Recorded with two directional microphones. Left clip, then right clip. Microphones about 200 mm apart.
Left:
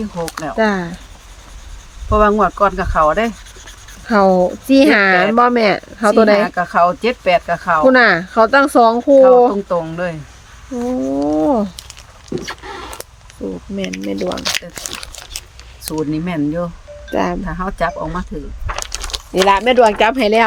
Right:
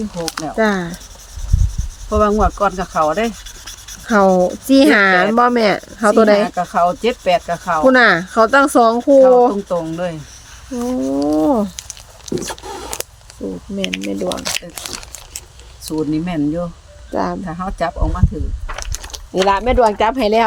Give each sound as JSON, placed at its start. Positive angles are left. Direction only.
{"t": 0.2, "sound": "speech", "side_deg": -10}
{"t": 0.4, "sound": "speech", "side_deg": 0}
{"t": 2.0, "sound": "speech", "side_deg": 5}
{"t": 10.7, "sound": "a sound", "side_deg": -10}
{"t": 12.3, "sound": "a sound", "side_deg": -20}
{"t": 13.7, "sound": "speech", "side_deg": -5}
{"t": 14.1, "sound": "speech", "side_deg": 5}
{"t": 16.1, "sound": "speech", "side_deg": 10}